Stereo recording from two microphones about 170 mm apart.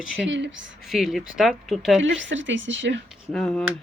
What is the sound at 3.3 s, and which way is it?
Speech, 5° left (ahead or behind).